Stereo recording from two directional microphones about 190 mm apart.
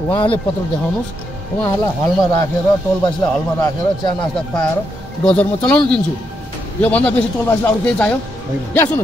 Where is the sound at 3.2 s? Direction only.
20° left (ahead or behind).